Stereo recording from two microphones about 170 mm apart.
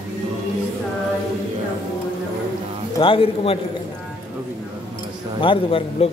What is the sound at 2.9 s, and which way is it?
Speech, 30° left (ahead or behind).